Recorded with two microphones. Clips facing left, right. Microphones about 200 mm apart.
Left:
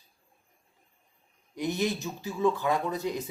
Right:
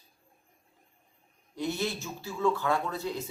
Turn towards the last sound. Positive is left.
turn(degrees=15)  # may be behind; listen again after turning